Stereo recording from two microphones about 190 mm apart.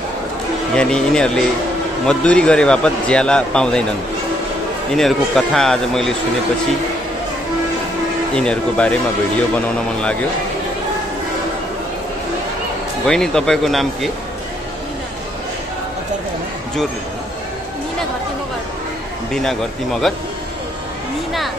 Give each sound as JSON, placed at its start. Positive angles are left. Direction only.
{"t": 0.7, "sound": "a man's voice", "side_deg": 5}
{"t": 4.9, "sound": "a man's voice", "side_deg": 0}
{"t": 8.4, "sound": "speech", "side_deg": 5}
{"t": 13.0, "sound": "a man's voice", "side_deg": 5}
{"t": 19.3, "sound": "a man's voice", "side_deg": 0}